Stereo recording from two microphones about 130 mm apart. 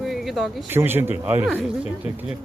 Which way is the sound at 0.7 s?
15° right (ahead or behind).